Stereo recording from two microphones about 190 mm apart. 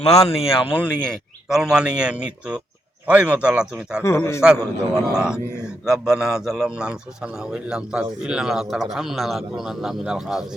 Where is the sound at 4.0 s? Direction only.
15° left (ahead or behind).